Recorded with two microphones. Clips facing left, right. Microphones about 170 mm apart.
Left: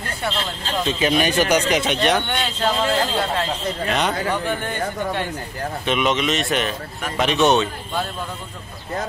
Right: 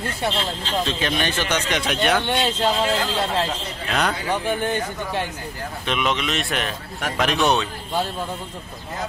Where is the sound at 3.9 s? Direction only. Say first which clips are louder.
Even; centre (ahead or behind).